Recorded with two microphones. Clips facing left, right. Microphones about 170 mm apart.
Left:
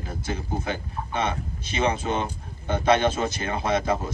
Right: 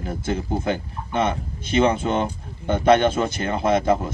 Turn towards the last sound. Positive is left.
turn(degrees=-50)  # may be behind; listen again after turning